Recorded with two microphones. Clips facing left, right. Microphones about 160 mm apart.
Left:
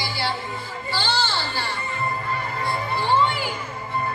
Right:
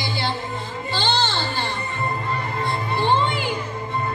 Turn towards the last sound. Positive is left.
turn(degrees=-20)  # may be behind; listen again after turning